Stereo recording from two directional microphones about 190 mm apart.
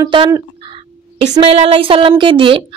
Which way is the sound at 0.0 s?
20° right (ahead or behind).